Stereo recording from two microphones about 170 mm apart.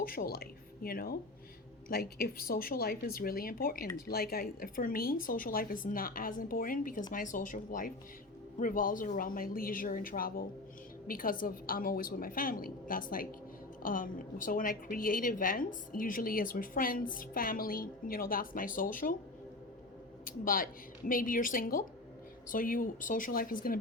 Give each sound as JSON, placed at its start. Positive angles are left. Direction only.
{"t": 0.0, "sound": "a woman's voice", "side_deg": 60}
{"t": 20.2, "sound": "a woman's voice", "side_deg": 55}